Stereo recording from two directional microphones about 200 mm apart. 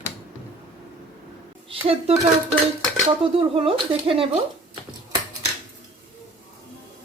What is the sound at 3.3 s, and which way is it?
Speech, 25° right (ahead or behind).